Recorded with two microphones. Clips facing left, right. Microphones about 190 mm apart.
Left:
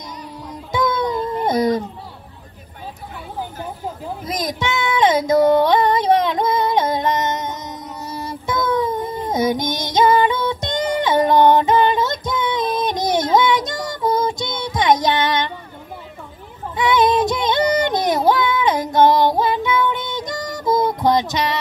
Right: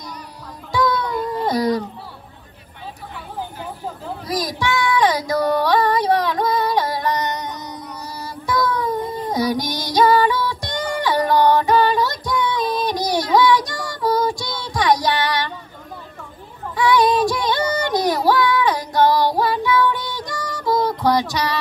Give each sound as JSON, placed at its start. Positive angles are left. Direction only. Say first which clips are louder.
{"t": 0.7, "sound": "a sound", "louder": "even", "side_deg": 20}
{"t": 4.2, "sound": "child singing", "louder": "right 1 dB", "side_deg": 20}
{"t": 16.7, "sound": "child singing", "louder": "even", "side_deg": 20}